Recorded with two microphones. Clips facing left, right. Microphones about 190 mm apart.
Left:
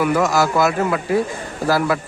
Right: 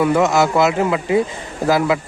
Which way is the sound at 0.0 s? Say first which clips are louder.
Right 2 dB; 25° right (ahead or behind).